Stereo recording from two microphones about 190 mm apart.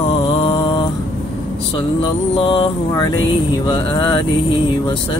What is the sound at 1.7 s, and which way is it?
Music, 25° left (ahead or behind).